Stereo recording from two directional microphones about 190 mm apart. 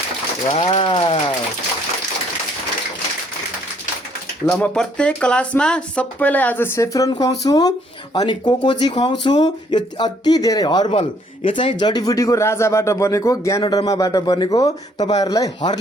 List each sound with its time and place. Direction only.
0.5 s speech: 25° left (ahead or behind)
4.4 s speech: 5° left (ahead or behind)